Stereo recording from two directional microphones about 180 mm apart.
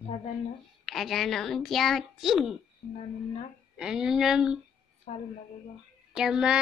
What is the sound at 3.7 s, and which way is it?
Speech, 5° right (ahead or behind).